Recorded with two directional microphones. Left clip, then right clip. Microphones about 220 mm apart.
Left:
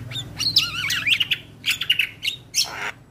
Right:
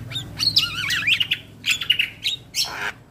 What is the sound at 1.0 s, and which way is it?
Bird, 50° left (ahead or behind).